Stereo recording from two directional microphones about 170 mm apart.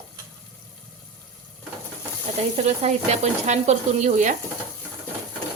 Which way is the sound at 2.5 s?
40° right (ahead or behind).